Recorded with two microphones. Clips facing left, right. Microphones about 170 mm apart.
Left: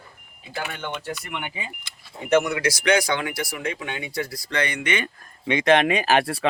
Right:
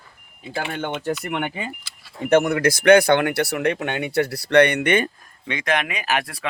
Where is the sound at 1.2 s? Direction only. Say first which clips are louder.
Right 7 dB; 60° right (ahead or behind).